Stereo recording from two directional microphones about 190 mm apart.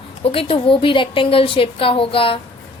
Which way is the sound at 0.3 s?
30° left (ahead or behind).